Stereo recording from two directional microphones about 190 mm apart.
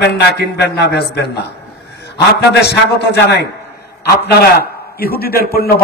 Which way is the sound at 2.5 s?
60° left (ahead or behind).